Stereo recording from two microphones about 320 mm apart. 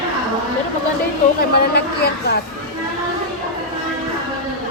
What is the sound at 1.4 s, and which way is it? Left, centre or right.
Speech, left.